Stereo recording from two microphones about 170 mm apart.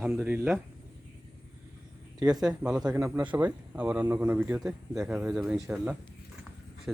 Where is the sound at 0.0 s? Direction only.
10° right (ahead or behind).